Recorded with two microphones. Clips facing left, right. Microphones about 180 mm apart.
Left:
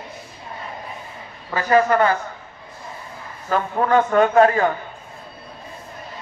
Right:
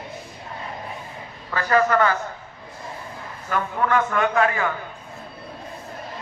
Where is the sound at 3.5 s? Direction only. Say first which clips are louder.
Left 4 dB; 30° left (ahead or behind).